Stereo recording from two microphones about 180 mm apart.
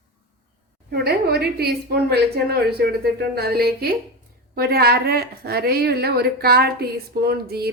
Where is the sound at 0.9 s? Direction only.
60° right (ahead or behind).